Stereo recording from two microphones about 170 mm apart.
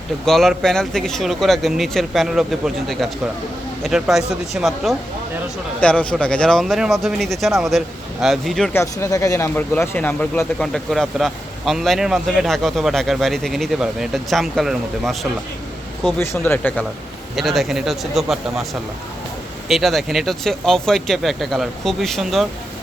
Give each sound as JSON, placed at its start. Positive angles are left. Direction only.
{"t": 0.3, "sound": "speech", "side_deg": 0}
{"t": 8.7, "sound": "speech", "side_deg": 15}
{"t": 16.1, "sound": "speech", "side_deg": 15}
{"t": 17.3, "sound": "speech", "side_deg": 0}